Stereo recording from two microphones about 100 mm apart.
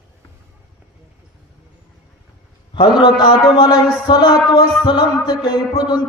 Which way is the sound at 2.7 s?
55° left (ahead or behind).